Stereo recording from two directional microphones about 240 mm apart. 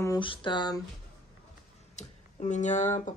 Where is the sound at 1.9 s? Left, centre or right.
Left.